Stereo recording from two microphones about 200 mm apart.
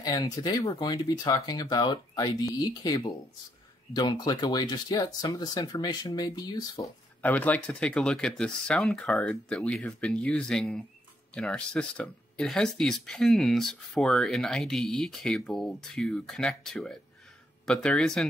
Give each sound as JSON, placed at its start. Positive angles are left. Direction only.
{"t": 0.0, "sound": "speech", "side_deg": 20}
{"t": 7.2, "sound": "speech", "side_deg": 10}